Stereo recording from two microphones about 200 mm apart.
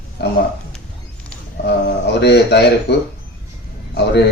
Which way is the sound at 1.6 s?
60° left (ahead or behind).